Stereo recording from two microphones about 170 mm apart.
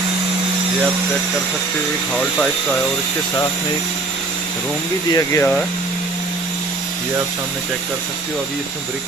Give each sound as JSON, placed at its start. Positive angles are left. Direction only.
{"t": 5.1, "sound": "speech", "side_deg": 15}